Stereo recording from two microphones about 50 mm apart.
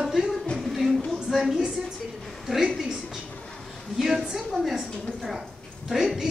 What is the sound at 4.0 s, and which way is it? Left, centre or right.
Speech, centre.